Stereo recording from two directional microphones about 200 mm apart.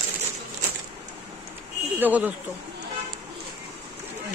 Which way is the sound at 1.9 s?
10° right (ahead or behind).